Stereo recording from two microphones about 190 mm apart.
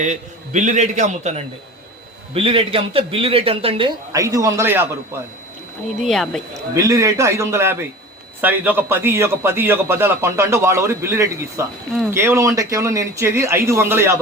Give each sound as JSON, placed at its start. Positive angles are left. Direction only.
{"t": 0.0, "sound": "a man's voice", "side_deg": -40}
{"t": 6.0, "sound": "speech", "side_deg": 0}
{"t": 6.7, "sound": "a man's voice", "side_deg": -15}